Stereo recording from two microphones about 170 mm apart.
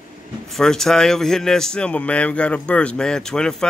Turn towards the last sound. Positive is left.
turn(degrees=5)  # may be behind; listen again after turning